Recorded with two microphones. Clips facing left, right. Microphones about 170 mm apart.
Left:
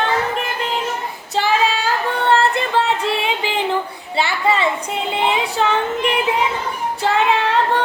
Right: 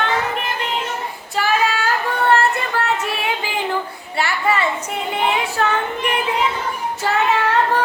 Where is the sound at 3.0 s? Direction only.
20° left (ahead or behind).